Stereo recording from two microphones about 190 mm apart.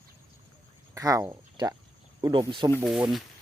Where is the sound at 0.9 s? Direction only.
15° right (ahead or behind).